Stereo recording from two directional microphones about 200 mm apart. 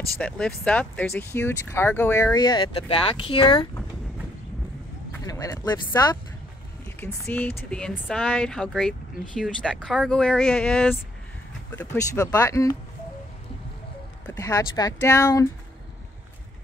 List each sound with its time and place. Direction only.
0.2 s speech: 5° left (ahead or behind); by 3.6 s 25° left (ahead or behind)
5.2 s speech: 15° left (ahead or behind)
14.2 s speech: 15° left (ahead or behind)